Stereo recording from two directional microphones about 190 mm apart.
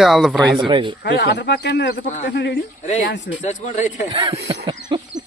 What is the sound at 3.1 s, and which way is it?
Speech, 70° left (ahead or behind).